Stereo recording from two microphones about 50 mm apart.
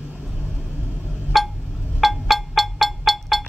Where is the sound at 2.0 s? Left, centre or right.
Centre.